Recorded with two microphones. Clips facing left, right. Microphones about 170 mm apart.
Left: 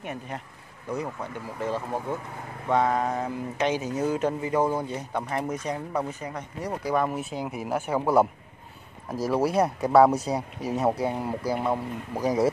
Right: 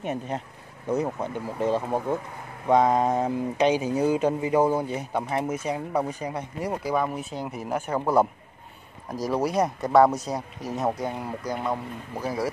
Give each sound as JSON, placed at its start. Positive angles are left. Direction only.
{"t": 0.0, "sound": "speech", "side_deg": -25}